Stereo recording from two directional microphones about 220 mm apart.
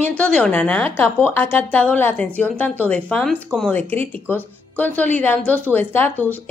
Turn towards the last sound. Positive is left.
turn(degrees=10)  # may be behind; listen again after turning